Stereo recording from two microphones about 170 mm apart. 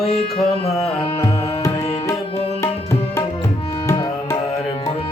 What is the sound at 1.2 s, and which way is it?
Music, 20° left (ahead or behind).